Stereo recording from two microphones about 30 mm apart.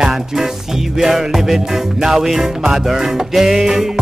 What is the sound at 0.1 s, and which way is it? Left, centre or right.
Music, centre.